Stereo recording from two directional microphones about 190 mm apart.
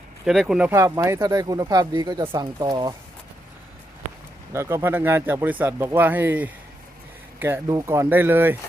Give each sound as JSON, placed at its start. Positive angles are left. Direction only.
{"t": 0.3, "sound": "speech", "side_deg": 0}
{"t": 4.5, "sound": "speech", "side_deg": -15}